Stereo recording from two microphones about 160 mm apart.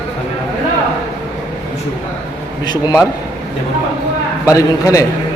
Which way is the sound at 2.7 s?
25° left (ahead or behind).